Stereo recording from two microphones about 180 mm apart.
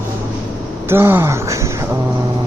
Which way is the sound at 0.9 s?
15° right (ahead or behind).